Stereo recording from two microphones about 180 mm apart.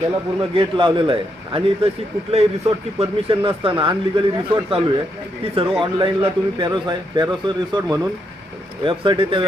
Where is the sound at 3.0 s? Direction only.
30° right (ahead or behind).